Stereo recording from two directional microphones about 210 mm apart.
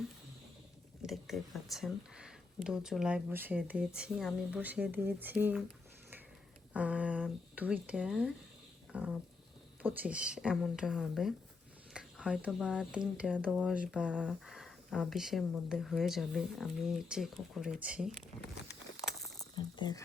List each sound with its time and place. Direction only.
1.0 s speech: centre (ahead or behind)
6.7 s speech: 5° right (ahead or behind)
8.9 s a sound: 5° right (ahead or behind)
9.8 s speech: 5° right (ahead or behind)
19.0 s a sound: centre (ahead or behind)
19.5 s speech: 20° left (ahead or behind)